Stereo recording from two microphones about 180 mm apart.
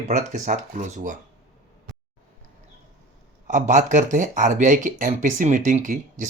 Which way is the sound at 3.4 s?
45° right (ahead or behind).